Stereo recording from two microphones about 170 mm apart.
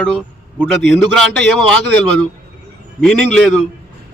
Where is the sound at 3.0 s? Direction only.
5° left (ahead or behind).